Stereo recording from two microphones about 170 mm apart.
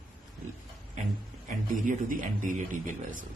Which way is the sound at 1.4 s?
50° right (ahead or behind).